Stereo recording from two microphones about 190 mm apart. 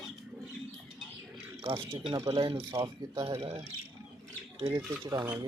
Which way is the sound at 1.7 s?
30° right (ahead or behind).